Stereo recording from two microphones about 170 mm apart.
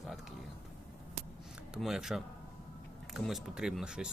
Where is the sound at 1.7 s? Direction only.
5° right (ahead or behind).